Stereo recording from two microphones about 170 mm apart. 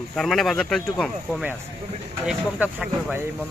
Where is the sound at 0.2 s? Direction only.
Centre (ahead or behind).